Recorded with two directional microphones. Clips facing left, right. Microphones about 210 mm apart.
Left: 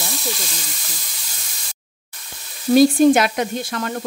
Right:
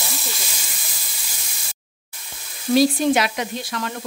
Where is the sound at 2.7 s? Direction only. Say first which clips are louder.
Left 5 dB; 50° left (ahead or behind).